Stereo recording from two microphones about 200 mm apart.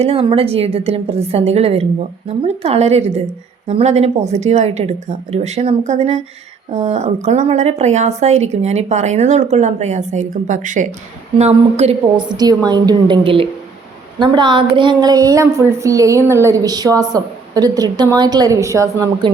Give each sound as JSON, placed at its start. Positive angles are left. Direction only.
{"t": 0.0, "sound": "speech", "side_deg": -30}
{"t": 12.4, "sound": "a woman's voice", "side_deg": -20}